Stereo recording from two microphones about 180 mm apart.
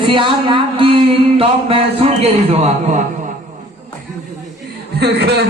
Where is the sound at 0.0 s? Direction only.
25° right (ahead or behind).